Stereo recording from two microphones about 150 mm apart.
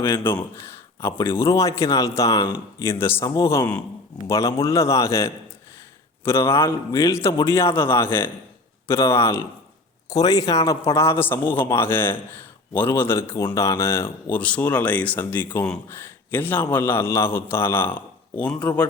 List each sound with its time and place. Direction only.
0.0 s speech: 15° left (ahead or behind)